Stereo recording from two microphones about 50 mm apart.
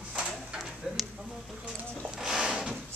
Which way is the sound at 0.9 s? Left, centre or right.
Centre.